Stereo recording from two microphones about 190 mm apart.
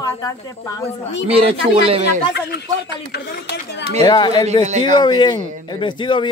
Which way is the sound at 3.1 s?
60° left (ahead or behind).